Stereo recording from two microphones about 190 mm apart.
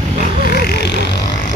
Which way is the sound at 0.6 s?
55° left (ahead or behind).